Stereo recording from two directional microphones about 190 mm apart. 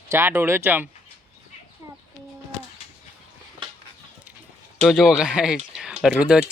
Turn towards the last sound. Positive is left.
turn(degrees=-5)  # may be behind; listen again after turning